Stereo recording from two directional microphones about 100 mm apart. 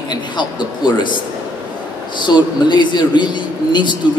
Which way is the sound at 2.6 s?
50° left (ahead or behind).